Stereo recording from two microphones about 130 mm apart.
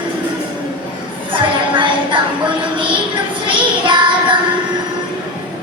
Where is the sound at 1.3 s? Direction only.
40° right (ahead or behind).